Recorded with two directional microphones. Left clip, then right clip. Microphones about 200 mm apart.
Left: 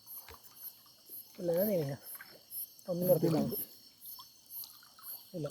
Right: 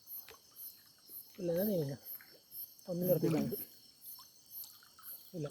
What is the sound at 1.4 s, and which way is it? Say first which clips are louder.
Speech: left 3 dB; 25° right (ahead or behind).